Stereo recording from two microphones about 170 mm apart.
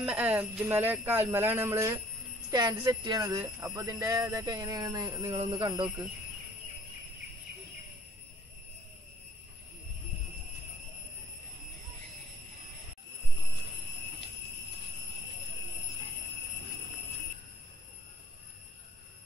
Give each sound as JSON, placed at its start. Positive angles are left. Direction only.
{"t": 0.0, "sound": "speech", "side_deg": -10}
{"t": 5.3, "sound": "speech", "side_deg": -35}